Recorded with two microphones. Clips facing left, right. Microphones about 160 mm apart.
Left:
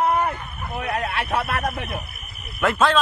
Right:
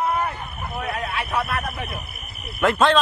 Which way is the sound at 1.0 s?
70° left (ahead or behind).